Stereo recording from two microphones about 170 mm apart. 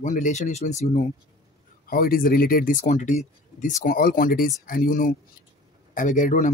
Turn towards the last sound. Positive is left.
turn(degrees=50)  # may be behind; listen again after turning